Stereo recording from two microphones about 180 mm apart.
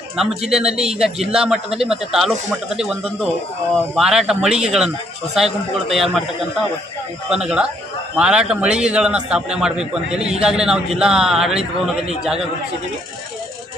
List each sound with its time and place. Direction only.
0.2 s speech: 5° right (ahead or behind)
7.3 s speech: 5° right (ahead or behind)